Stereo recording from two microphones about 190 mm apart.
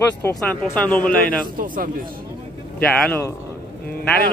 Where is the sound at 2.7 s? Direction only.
5° left (ahead or behind).